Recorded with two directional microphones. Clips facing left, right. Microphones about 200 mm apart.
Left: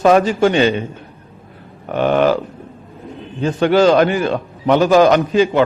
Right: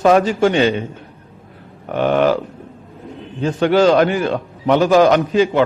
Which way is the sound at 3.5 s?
15° left (ahead or behind).